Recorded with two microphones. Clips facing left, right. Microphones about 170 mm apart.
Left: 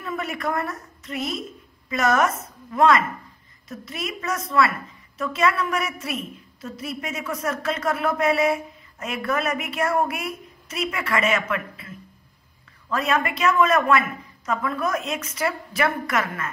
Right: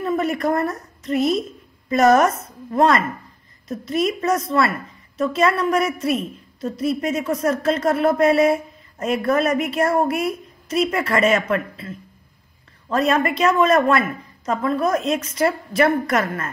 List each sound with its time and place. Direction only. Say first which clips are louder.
0.0 s a woman's voice: right 7 dB; 35° right (ahead or behind)
12.9 s speech: right 5 dB; 35° right (ahead or behind)